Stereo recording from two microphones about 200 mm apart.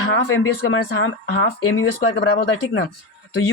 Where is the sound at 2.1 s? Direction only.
55° left (ahead or behind).